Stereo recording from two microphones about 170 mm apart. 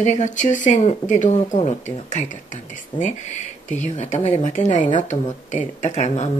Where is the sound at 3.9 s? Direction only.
40° left (ahead or behind).